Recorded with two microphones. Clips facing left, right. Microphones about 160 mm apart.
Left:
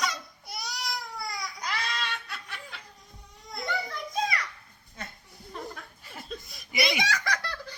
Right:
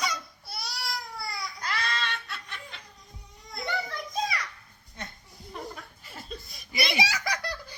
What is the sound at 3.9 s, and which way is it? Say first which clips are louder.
Children playing: left 1 dB; centre (ahead or behind).